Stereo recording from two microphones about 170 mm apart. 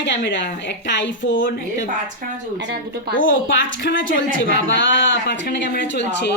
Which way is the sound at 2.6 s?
75° right (ahead or behind).